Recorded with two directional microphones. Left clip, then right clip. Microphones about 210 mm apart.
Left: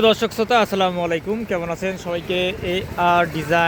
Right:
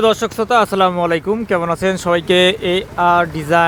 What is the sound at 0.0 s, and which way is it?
Speech, 10° right (ahead or behind).